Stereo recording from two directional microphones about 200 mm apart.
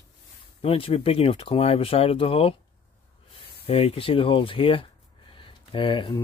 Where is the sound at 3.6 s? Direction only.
30° left (ahead or behind).